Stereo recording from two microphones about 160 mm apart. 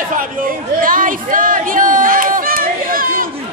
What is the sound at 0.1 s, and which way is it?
Chatter, 60° right (ahead or behind).